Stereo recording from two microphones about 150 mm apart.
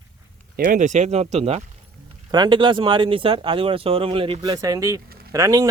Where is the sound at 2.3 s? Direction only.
30° right (ahead or behind).